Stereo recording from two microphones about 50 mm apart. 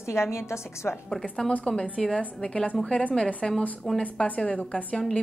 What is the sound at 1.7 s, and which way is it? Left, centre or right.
A woman's voice, centre.